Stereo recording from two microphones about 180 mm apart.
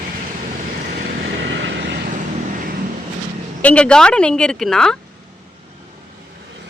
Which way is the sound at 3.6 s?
5° left (ahead or behind).